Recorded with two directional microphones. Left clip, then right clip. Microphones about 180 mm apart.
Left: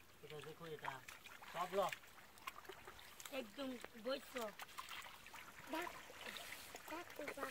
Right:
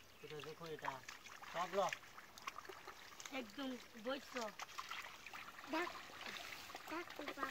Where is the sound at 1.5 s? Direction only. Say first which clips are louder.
Right 1 dB; 60° left (ahead or behind).